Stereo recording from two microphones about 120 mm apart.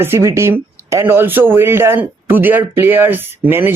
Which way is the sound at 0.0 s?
20° right (ahead or behind).